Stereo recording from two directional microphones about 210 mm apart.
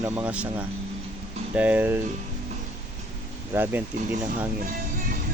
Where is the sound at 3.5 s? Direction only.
10° right (ahead or behind).